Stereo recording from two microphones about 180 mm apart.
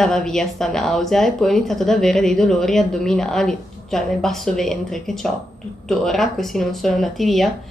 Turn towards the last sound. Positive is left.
turn(degrees=0)  # may be behind; listen again after turning